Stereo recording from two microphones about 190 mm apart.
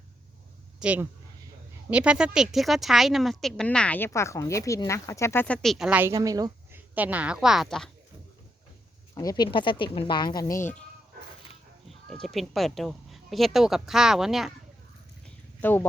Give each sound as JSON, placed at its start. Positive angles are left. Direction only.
{"t": 0.8, "sound": "speech", "side_deg": -5}
{"t": 9.1, "sound": "speech", "side_deg": 20}
{"t": 12.0, "sound": "speech", "side_deg": 0}
{"t": 15.6, "sound": "speech", "side_deg": 10}